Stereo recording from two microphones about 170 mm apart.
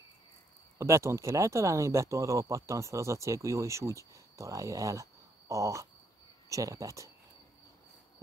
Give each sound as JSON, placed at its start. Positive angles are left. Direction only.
{"t": 0.7, "sound": "speech", "side_deg": -15}